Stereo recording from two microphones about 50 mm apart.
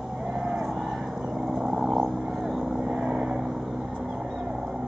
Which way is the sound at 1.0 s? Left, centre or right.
Centre.